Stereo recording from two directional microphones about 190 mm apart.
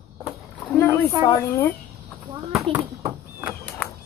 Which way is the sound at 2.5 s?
Centre (ahead or behind).